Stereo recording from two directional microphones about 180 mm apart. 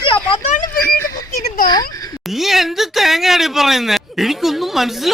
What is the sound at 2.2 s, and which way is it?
Speech, centre (ahead or behind).